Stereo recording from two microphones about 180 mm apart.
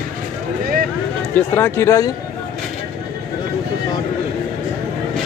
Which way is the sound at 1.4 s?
10° left (ahead or behind).